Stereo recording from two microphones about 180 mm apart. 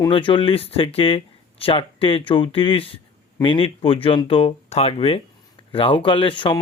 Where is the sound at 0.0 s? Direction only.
30° left (ahead or behind).